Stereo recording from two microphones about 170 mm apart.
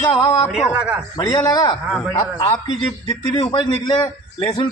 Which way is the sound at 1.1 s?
20° left (ahead or behind).